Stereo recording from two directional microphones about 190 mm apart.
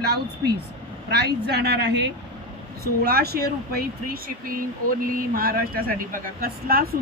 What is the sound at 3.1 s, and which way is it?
A man's voice, 55° right (ahead or behind).